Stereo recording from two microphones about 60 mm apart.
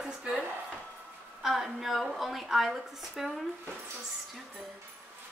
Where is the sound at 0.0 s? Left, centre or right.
Centre.